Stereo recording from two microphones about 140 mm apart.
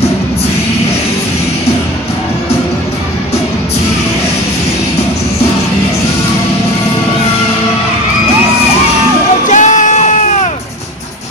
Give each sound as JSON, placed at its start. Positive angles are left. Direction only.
{"t": 9.5, "sound": "crowd", "side_deg": 60}